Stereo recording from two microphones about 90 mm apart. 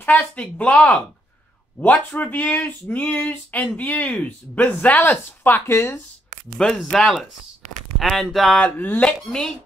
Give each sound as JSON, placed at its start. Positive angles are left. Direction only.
{"t": 0.0, "sound": "speech", "side_deg": 15}
{"t": 6.9, "sound": "speech", "side_deg": 5}
{"t": 8.5, "sound": "speech", "side_deg": 20}
{"t": 9.3, "sound": "speech", "side_deg": 5}